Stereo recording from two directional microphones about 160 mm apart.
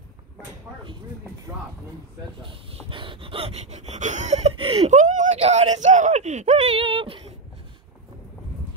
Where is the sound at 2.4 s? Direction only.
30° right (ahead or behind).